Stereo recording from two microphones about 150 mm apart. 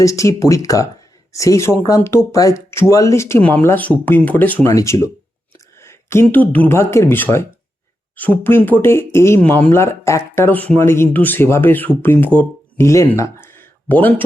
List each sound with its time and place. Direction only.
0.0 s speech: 20° left (ahead or behind)